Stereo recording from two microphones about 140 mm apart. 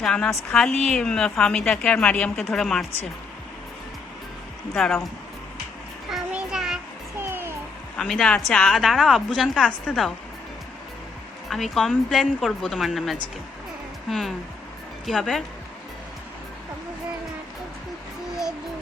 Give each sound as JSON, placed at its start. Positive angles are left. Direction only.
{"t": 0.0, "sound": "a woman's voice", "side_deg": 5}
{"t": 4.7, "sound": "a woman's voice", "side_deg": 5}
{"t": 6.1, "sound": "music", "side_deg": -5}
{"t": 7.2, "sound": "music", "side_deg": -15}
{"t": 7.9, "sound": "a woman's voice", "side_deg": 5}
{"t": 11.4, "sound": "a woman's voice", "side_deg": 0}